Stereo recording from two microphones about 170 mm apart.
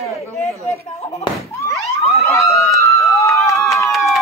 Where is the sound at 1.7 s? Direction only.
Centre (ahead or behind).